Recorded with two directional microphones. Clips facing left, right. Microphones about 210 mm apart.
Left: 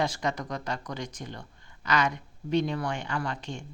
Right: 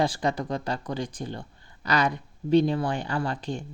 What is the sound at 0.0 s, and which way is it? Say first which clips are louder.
Speech: right 4 dB; 30° right (ahead or behind).